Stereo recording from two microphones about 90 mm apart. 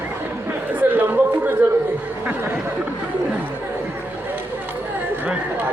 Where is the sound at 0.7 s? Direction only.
20° right (ahead or behind).